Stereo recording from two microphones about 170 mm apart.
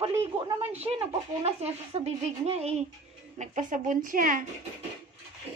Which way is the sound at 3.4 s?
45° right (ahead or behind).